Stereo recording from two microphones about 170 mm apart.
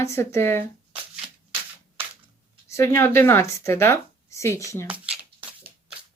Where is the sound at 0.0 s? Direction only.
15° left (ahead or behind).